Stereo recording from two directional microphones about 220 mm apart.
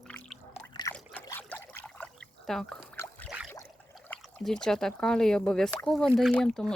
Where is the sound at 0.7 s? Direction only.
20° left (ahead or behind).